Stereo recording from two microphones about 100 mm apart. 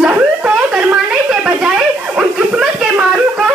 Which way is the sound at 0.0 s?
15° right (ahead or behind).